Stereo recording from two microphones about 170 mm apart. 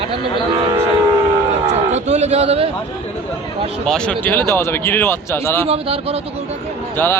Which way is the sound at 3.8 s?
5° left (ahead or behind).